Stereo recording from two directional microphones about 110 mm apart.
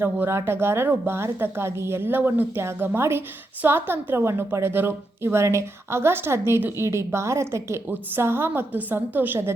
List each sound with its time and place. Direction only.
0.0 s a woman's voice: 20° right (ahead or behind)